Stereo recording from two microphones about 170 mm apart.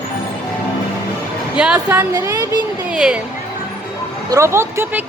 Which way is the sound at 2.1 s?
20° right (ahead or behind).